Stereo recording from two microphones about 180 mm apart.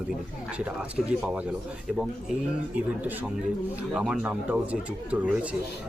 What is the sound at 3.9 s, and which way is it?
Speech, 5° right (ahead or behind).